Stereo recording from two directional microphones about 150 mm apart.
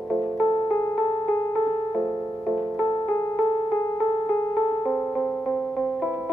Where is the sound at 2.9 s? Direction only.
30° left (ahead or behind).